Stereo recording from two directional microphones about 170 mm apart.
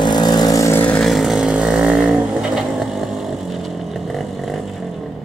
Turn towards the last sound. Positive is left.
turn(degrees=0)  # may be behind; listen again after turning